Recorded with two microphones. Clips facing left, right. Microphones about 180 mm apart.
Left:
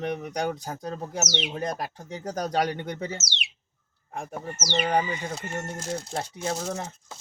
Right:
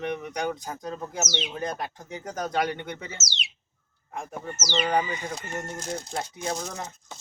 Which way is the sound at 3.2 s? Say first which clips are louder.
Even; 60° left (ahead or behind).